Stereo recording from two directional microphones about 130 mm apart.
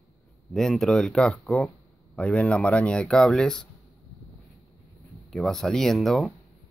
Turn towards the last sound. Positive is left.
turn(degrees=0)  # may be behind; listen again after turning